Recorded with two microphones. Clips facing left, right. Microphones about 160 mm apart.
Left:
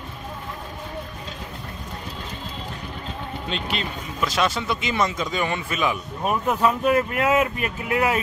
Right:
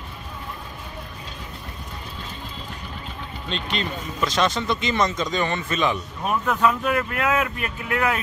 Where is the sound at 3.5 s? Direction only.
5° left (ahead or behind).